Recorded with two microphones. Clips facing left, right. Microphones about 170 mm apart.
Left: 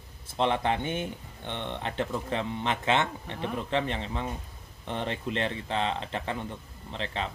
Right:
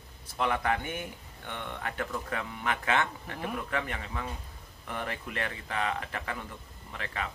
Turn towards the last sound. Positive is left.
turn(degrees=25)  # may be behind; listen again after turning